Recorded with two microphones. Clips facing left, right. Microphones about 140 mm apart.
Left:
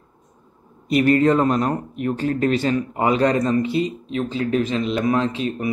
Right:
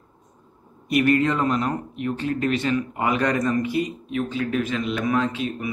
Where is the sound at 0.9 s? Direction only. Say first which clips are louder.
Left 4 dB; 30° left (ahead or behind).